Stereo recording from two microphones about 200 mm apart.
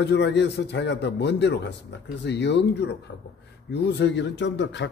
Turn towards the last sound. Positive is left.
turn(degrees=60)  # may be behind; listen again after turning